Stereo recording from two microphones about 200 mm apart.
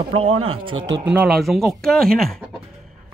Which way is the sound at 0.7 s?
70° right (ahead or behind).